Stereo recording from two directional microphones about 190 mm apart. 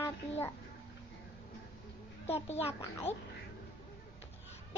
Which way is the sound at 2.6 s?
30° left (ahead or behind).